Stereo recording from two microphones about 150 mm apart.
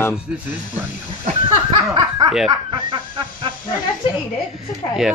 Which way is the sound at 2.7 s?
30° right (ahead or behind).